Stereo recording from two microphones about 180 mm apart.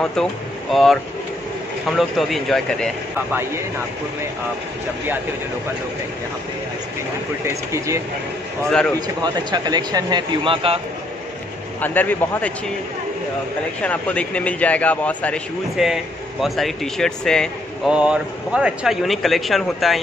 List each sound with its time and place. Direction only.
0.1 s a man's voice: centre (ahead or behind)
7.4 s speech: 15° right (ahead or behind)
8.6 s a man's voice: 5° left (ahead or behind)
9.0 s speech: 20° right (ahead or behind)
11.8 s a man's voice: 10° left (ahead or behind)
13.8 s a man's voice: 5° left (ahead or behind)